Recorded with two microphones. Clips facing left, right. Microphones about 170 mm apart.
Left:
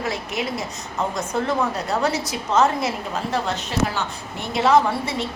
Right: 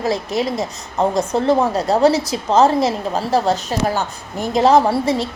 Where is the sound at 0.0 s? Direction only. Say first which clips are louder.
Right 7 dB; 35° right (ahead or behind).